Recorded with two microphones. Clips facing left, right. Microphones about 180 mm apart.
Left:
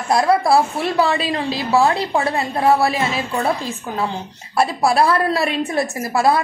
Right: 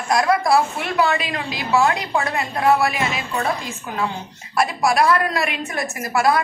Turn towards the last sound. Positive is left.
turn(degrees=30)  # may be behind; listen again after turning